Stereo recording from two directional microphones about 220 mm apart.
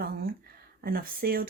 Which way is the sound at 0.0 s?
45° right (ahead or behind).